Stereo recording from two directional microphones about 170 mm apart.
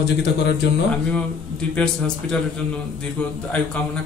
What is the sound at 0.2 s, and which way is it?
Speech, 80° left.